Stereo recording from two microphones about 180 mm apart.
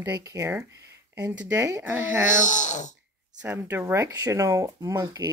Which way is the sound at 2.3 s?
45° left (ahead or behind).